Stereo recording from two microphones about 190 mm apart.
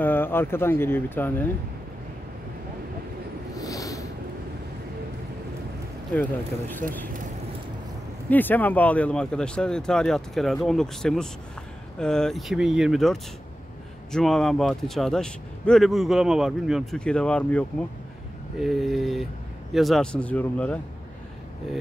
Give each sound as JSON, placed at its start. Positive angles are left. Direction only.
{"t": 0.0, "sound": "speech", "side_deg": 10}
{"t": 3.5, "sound": "a sound", "side_deg": 20}
{"t": 6.7, "sound": "speech", "side_deg": 10}
{"t": 8.3, "sound": "a man's voice", "side_deg": 10}